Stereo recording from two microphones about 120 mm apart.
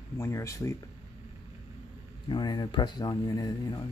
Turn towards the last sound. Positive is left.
turn(degrees=35)  # may be behind; listen again after turning